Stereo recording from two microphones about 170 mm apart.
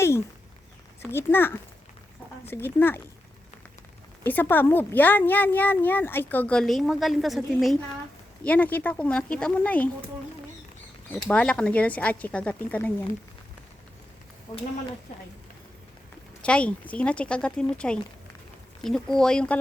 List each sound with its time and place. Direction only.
1.1 s speech: 15° left (ahead or behind)
4.2 s speech: 10° left (ahead or behind)
11.1 s speech: 10° left (ahead or behind)
14.5 s speech: 20° left (ahead or behind)
16.4 s speech: 5° left (ahead or behind)